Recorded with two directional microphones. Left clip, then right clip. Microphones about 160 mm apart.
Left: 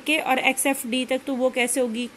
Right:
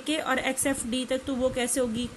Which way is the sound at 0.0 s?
20° left (ahead or behind).